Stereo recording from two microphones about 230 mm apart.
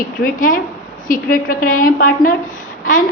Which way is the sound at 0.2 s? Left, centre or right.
Left.